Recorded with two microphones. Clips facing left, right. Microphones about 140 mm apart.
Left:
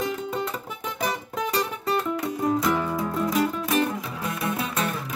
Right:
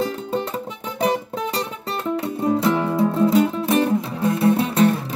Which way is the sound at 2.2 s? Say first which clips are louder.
Right 6 dB; 25° right (ahead or behind).